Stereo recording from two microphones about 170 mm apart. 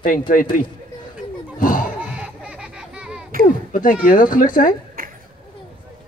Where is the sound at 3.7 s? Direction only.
55° left (ahead or behind).